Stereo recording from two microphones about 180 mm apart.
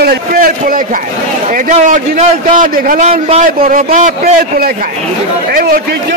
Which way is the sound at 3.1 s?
35° right (ahead or behind).